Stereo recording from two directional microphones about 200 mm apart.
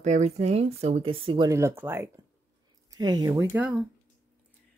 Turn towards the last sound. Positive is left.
turn(degrees=-15)  # may be behind; listen again after turning